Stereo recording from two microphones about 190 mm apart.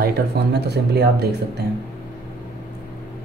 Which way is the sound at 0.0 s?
60° right (ahead or behind).